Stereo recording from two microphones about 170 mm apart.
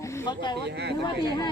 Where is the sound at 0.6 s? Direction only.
80° right.